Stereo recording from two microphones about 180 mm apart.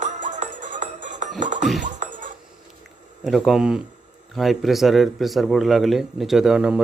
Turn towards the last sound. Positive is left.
turn(degrees=-5)  # may be behind; listen again after turning